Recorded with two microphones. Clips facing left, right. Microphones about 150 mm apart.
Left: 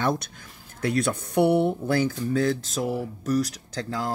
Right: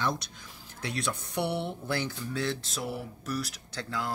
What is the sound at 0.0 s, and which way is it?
Speech, 55° left (ahead or behind).